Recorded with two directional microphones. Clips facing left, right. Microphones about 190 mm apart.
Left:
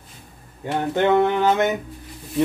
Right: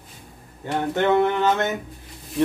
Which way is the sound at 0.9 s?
15° left (ahead or behind).